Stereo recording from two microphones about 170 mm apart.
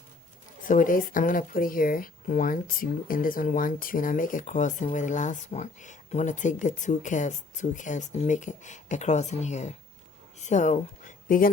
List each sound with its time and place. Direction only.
0.6 s speech: 50° left (ahead or behind)